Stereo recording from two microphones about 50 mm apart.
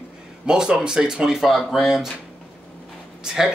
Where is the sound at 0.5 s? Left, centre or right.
Centre.